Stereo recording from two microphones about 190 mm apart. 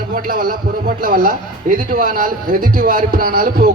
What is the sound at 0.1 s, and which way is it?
A man's voice, 50° right (ahead or behind).